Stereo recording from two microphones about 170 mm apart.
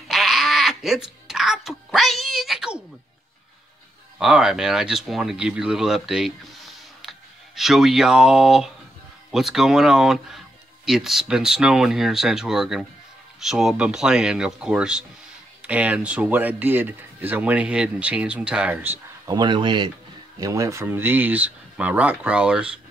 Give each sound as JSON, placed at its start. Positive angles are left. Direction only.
{"t": 0.1, "sound": "music", "side_deg": 0}
{"t": 4.2, "sound": "speech", "side_deg": -5}
{"t": 19.3, "sound": "speech", "side_deg": -30}